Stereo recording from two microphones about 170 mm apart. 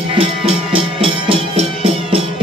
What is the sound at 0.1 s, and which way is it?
Music, 30° right (ahead or behind).